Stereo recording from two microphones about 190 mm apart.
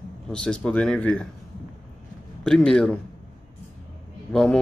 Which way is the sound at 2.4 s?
5° left (ahead or behind).